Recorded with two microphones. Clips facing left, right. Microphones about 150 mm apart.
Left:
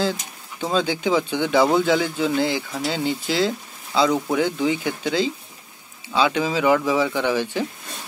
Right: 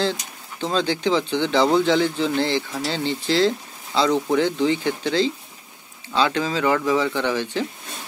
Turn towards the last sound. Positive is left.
turn(degrees=10)  # may be behind; listen again after turning